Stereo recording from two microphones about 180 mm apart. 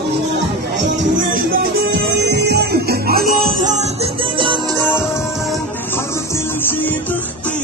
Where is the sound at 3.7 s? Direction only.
35° right (ahead or behind).